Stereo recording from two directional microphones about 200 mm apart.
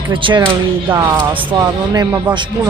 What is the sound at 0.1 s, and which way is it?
Speech, 25° right (ahead or behind).